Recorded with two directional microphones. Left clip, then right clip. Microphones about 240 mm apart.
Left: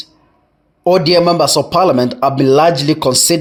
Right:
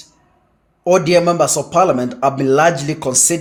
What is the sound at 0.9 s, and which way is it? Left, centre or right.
Speech, left.